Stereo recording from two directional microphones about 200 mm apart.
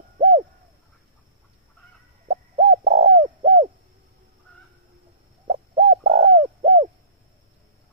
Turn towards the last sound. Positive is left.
turn(degrees=-30)  # may be behind; listen again after turning